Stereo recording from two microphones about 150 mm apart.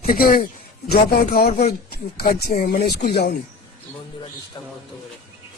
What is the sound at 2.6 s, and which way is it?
Speech, 90° left.